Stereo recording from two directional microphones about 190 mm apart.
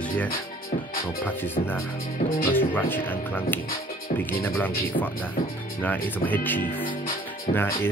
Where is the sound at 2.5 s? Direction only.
10° left (ahead or behind).